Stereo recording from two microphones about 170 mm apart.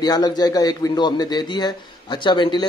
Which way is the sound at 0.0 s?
25° left (ahead or behind).